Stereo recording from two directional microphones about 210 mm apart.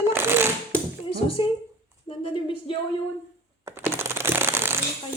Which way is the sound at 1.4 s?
25° left (ahead or behind).